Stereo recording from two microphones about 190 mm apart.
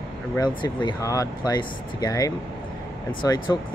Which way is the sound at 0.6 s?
20° left (ahead or behind).